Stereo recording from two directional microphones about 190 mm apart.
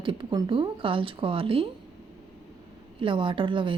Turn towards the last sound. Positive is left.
turn(degrees=-25)  # may be behind; listen again after turning